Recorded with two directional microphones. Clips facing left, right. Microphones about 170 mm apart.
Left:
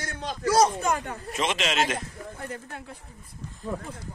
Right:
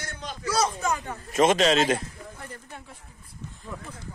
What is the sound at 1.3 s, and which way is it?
Speech, 45° right (ahead or behind).